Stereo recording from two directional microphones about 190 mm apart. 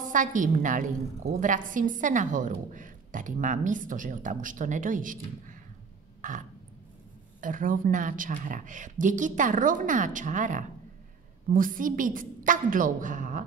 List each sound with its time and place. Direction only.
0.0 s a woman's voice: 45° right (ahead or behind)
7.3 s a woman's voice: 45° right (ahead or behind)